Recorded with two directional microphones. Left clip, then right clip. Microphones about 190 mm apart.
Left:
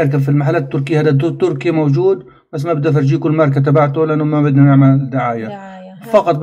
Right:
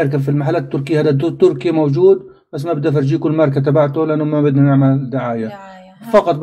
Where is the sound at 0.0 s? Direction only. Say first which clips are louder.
Left 1 dB; 25° right (ahead or behind).